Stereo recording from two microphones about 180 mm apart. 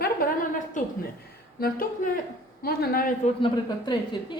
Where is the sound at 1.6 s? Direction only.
55° left (ahead or behind).